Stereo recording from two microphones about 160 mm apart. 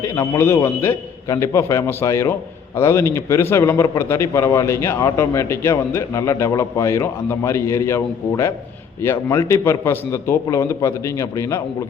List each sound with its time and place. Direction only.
0.0 s a man's voice: 20° left (ahead or behind)